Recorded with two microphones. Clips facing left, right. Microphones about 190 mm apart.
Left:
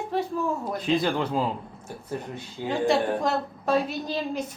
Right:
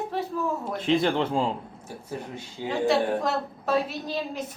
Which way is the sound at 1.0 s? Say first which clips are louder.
Right 1 dB; 25° right (ahead or behind).